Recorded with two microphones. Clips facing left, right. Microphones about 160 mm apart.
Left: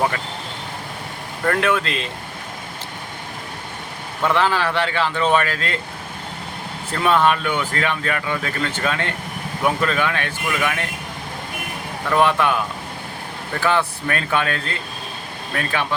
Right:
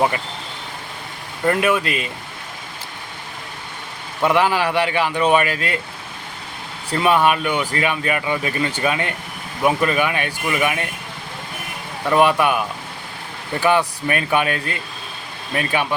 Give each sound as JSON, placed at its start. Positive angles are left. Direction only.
{"t": 1.5, "sound": "speech", "side_deg": -10}
{"t": 4.2, "sound": "speech", "side_deg": -15}
{"t": 6.9, "sound": "speech", "side_deg": -10}
{"t": 12.0, "sound": "speech", "side_deg": -15}